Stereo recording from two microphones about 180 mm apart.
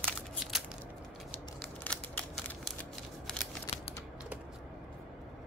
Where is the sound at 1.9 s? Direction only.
10° left (ahead or behind).